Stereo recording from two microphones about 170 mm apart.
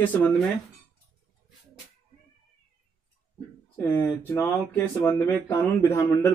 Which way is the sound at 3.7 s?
10° left (ahead or behind).